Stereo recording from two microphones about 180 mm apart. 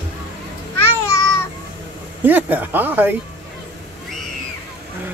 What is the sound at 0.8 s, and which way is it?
Babbling, 15° left (ahead or behind).